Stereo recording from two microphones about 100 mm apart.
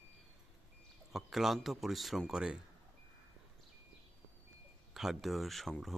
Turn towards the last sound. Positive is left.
turn(degrees=0)  # may be behind; listen again after turning